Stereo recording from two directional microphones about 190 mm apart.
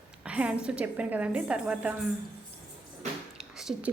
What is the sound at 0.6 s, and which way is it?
A woman's voice, 5° right (ahead or behind).